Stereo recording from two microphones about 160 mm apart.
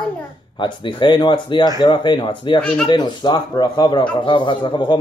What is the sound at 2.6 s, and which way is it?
Speech, 5° left (ahead or behind).